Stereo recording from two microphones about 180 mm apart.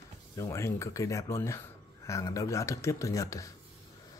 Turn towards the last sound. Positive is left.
turn(degrees=20)  # may be behind; listen again after turning